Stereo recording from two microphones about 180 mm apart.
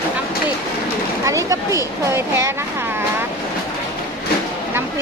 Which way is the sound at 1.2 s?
20° right (ahead or behind).